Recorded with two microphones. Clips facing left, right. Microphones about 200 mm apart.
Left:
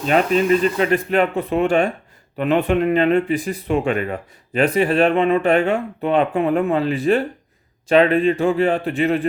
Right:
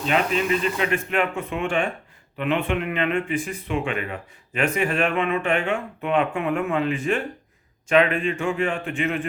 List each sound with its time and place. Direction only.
0.0 s speech: 40° left (ahead or behind)